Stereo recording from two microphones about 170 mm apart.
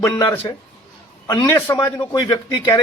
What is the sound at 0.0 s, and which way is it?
A man's voice, 15° left (ahead or behind).